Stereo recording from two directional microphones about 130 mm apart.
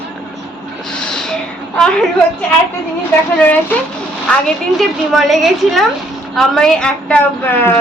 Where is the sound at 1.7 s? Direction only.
5° left (ahead or behind).